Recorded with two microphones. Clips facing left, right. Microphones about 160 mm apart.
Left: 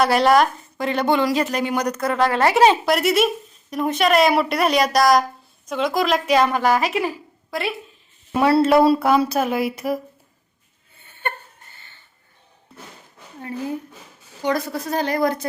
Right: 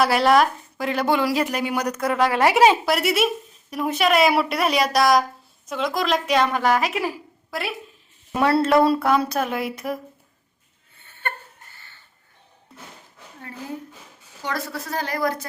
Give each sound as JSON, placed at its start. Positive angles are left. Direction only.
{"t": 0.0, "sound": "a woman's voice", "side_deg": 0}
{"t": 8.3, "sound": "speech", "side_deg": 5}
{"t": 14.4, "sound": "a woman's voice", "side_deg": 20}